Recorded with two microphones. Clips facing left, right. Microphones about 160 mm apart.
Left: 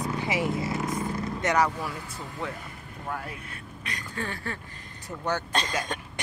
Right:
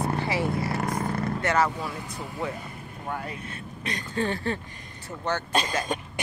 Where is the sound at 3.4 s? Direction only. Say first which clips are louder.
Right 5 dB; 25° right (ahead or behind).